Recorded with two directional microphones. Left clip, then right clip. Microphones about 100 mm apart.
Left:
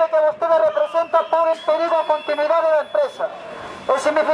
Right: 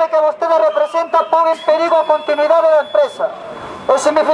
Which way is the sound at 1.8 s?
25° left (ahead or behind).